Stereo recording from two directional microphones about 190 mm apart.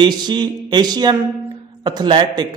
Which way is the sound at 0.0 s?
25° right (ahead or behind).